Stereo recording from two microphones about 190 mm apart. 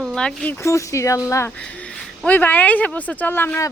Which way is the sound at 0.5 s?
15° left (ahead or behind).